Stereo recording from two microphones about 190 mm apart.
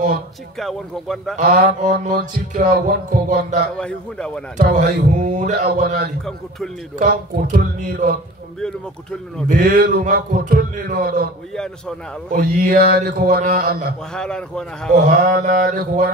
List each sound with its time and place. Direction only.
0.6 s speech: centre (ahead or behind)
1.3 s music: 50° right (ahead or behind)
3.7 s speech: 5° left (ahead or behind)
4.6 s music: 45° right (ahead or behind)
9.5 s music: 50° right (ahead or behind)
12.3 s music: 50° right (ahead or behind)
14.1 s speech: 5° left (ahead or behind)
15.0 s music: 45° right (ahead or behind)